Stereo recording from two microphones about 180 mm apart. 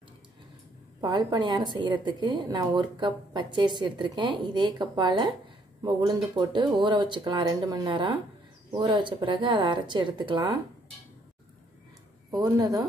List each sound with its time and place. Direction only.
1.0 s a woman's voice: 25° right (ahead or behind)
12.3 s a woman's voice: 20° right (ahead or behind)